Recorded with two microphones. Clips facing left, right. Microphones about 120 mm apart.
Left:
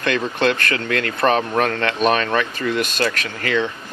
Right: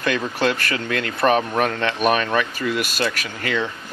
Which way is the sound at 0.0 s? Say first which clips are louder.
Left 2 dB; 10° right (ahead or behind).